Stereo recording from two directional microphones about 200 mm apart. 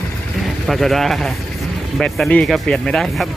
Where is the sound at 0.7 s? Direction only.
Centre (ahead or behind).